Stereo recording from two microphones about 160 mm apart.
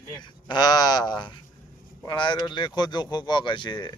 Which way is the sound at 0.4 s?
25° left (ahead or behind).